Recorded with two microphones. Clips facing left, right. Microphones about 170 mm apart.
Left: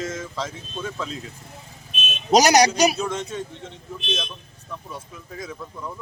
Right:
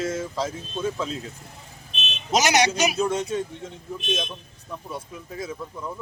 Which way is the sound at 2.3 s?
40° left (ahead or behind).